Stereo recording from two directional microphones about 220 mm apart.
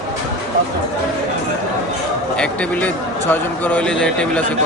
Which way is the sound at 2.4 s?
5° left (ahead or behind).